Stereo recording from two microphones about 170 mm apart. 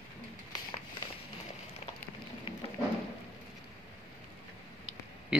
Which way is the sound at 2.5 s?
30° left (ahead or behind).